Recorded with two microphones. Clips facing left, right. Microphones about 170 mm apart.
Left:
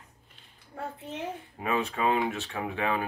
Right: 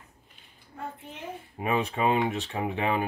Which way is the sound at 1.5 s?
20° right (ahead or behind).